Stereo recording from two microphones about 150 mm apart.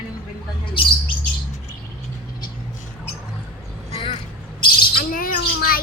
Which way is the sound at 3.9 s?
35° left (ahead or behind).